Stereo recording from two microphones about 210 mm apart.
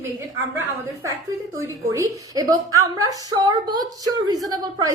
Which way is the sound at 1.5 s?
15° right (ahead or behind).